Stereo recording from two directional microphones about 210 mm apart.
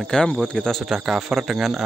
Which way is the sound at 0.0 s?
5° left (ahead or behind).